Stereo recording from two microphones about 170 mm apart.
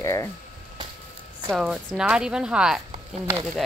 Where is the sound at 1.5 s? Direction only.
5° right (ahead or behind).